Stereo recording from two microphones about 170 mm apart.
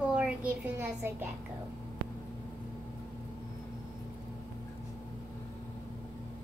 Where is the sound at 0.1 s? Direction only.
5° right (ahead or behind).